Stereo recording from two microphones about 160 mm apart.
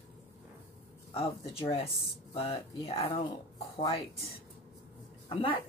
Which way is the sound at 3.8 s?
25° left (ahead or behind).